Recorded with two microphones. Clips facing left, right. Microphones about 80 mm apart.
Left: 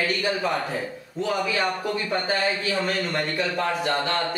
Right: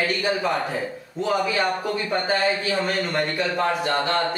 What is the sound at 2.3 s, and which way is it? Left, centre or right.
Speech, centre.